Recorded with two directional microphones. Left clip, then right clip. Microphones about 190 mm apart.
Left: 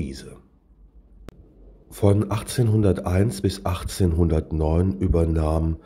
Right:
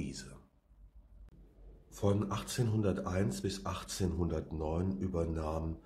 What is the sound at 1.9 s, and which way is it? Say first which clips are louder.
Speech: left 12 dB; 35° left (ahead or behind).